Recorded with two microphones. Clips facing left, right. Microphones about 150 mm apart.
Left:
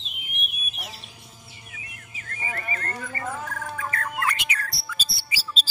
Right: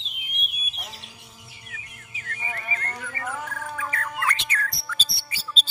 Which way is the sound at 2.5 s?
40° left (ahead or behind).